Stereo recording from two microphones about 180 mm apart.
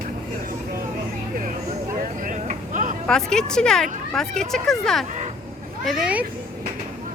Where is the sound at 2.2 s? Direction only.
45° right (ahead or behind).